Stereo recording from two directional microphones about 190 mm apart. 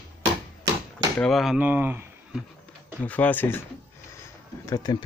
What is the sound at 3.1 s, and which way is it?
Speech, 10° left (ahead or behind).